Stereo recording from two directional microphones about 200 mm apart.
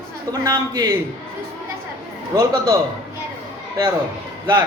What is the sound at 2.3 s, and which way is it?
Speech, 20° right (ahead or behind).